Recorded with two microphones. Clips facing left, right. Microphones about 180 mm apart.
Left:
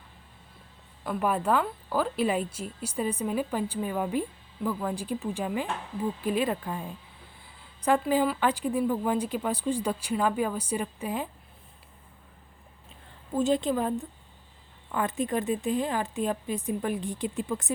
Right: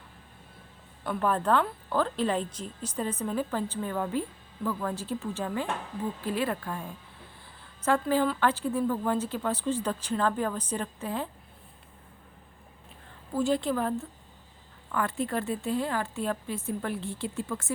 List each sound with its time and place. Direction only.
1.0 s a woman's voice: 10° left (ahead or behind)
13.3 s a woman's voice: 20° left (ahead or behind)